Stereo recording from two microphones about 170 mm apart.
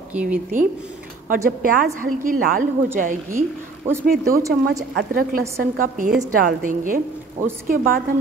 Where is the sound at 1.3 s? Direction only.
55° right (ahead or behind).